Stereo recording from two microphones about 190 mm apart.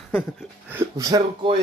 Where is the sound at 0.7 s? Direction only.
15° right (ahead or behind).